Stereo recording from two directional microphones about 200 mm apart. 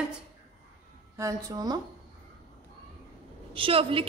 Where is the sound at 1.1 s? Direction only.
15° right (ahead or behind).